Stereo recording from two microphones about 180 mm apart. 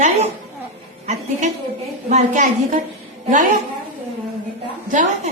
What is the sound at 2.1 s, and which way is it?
A woman's voice, 40° right (ahead or behind).